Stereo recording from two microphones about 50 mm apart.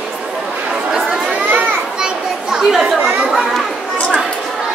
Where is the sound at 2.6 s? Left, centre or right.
Centre.